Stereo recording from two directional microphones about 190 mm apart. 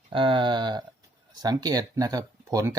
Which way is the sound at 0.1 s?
25° right (ahead or behind).